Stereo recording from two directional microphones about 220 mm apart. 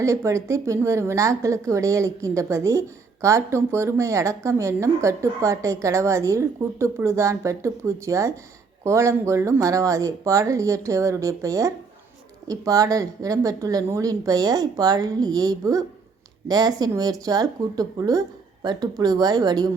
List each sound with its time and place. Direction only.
0.0 s a woman's voice: 15° right (ahead or behind)